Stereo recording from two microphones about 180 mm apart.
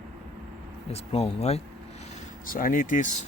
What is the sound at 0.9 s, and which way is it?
Speech, 35° left (ahead or behind).